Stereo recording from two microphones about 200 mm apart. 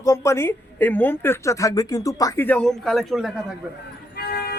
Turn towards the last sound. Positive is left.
turn(degrees=50)  # may be behind; listen again after turning